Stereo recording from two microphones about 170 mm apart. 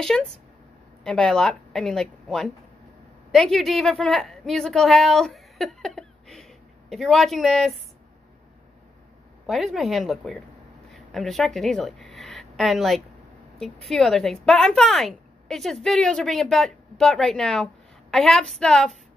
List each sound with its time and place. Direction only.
0.0 s a woman's voice: 5° left (ahead or behind)
9.5 s a woman's voice: centre (ahead or behind)